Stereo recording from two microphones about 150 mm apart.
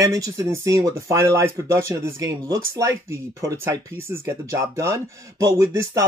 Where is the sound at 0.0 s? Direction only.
25° right (ahead or behind).